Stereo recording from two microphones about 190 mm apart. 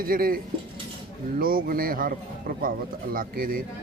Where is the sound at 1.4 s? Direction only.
50° right (ahead or behind).